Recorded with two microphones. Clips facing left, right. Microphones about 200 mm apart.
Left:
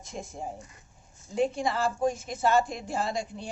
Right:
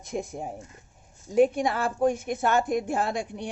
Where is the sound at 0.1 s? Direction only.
60° right (ahead or behind).